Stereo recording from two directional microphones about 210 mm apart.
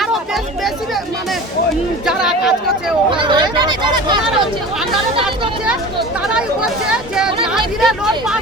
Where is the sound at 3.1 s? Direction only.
20° right (ahead or behind).